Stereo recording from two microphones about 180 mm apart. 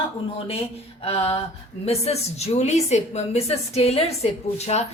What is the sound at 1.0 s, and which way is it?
A woman's voice, 35° left (ahead or behind).